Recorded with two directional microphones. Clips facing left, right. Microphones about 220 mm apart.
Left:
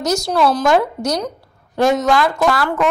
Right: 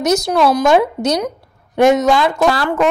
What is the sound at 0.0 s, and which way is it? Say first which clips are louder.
Speech: right 3 dB; 20° right (ahead or behind).